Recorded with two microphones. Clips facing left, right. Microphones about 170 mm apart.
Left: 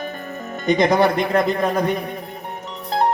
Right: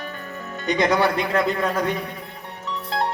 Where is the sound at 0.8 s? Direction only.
40° left (ahead or behind).